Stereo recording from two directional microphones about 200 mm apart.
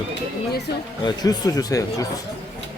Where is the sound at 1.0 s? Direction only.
20° left (ahead or behind).